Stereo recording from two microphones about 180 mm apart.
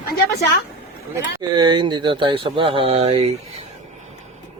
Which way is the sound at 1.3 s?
25° right (ahead or behind).